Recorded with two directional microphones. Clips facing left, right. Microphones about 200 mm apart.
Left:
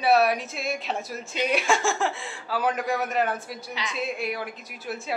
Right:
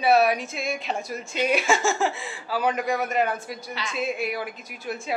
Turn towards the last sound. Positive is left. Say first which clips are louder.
# right 1 dB
turn(degrees=0)  # may be behind; listen again after turning